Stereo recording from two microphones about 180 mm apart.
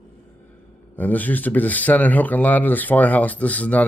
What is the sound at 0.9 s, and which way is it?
Speech, 10° left (ahead or behind).